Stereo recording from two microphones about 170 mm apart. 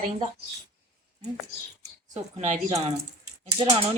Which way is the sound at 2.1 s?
40° right (ahead or behind).